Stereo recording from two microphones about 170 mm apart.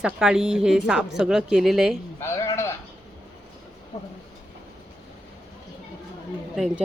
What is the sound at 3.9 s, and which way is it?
Speech, 40° left (ahead or behind).